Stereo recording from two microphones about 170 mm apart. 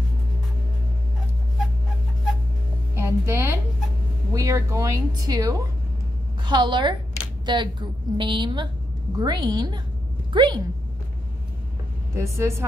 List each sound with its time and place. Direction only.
2.9 s a sound: 15° right (ahead or behind)
4.3 s a woman's voice: 15° right (ahead or behind)
12.2 s speech: 15° right (ahead or behind)